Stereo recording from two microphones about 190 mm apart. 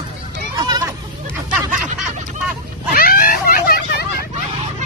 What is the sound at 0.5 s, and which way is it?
Hubbub, 20° right (ahead or behind).